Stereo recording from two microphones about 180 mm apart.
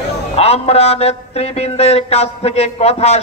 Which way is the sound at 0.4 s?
35° left (ahead or behind).